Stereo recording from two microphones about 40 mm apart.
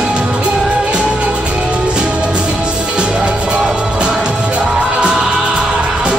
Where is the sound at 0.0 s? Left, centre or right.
Right.